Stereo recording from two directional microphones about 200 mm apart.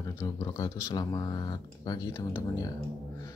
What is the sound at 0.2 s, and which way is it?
Speech, 15° left (ahead or behind).